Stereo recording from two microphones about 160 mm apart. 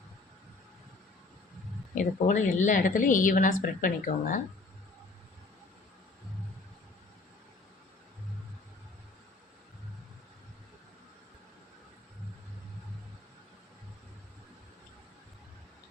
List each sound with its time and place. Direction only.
2.0 s a woman's voice: 50° left (ahead or behind)